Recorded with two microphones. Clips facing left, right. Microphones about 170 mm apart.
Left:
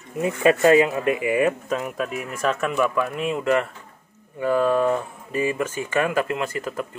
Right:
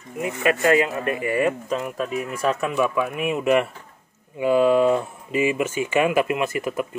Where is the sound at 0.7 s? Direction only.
15° left (ahead or behind); by 2.7 s 5° right (ahead or behind).